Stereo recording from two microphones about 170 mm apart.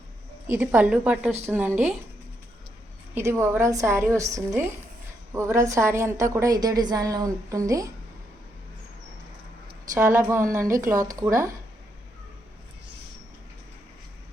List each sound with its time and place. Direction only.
0.5 s a woman's voice: 10° right (ahead or behind)
3.2 s a woman's voice: 15° right (ahead or behind)
9.9 s a woman's voice: 15° right (ahead or behind)